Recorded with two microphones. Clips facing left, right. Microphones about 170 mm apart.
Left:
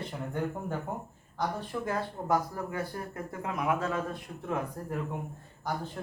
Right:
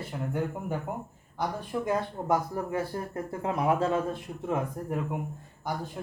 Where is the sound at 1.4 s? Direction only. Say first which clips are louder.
Right 2 dB; 20° right (ahead or behind).